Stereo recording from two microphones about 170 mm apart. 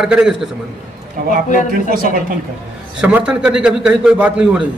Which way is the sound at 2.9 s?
5° right (ahead or behind).